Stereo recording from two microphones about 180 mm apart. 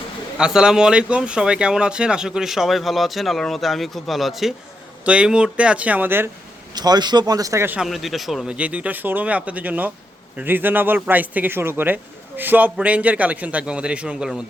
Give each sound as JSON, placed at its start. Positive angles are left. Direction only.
{"t": 0.3, "sound": "speech", "side_deg": -5}
{"t": 6.7, "sound": "speech", "side_deg": -25}
{"t": 7.9, "sound": "speech", "side_deg": 0}